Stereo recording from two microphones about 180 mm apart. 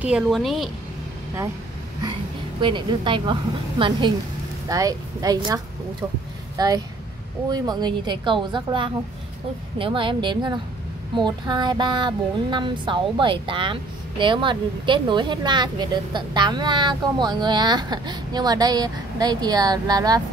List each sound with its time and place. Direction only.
0.0 s a woman's voice: centre (ahead or behind)
2.6 s speech: 25° right (ahead or behind)
4.6 s speech: 20° right (ahead or behind)